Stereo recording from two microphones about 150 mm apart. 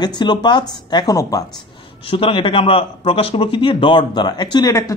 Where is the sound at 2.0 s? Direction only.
35° left (ahead or behind).